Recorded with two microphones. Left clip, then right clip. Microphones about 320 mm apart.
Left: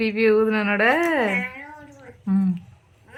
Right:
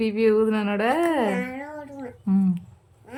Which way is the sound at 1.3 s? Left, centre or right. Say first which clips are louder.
Left 3 dB; right.